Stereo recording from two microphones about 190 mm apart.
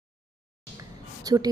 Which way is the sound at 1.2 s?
20° right (ahead or behind).